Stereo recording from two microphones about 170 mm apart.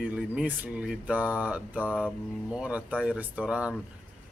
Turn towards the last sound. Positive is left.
turn(degrees=-5)  # may be behind; listen again after turning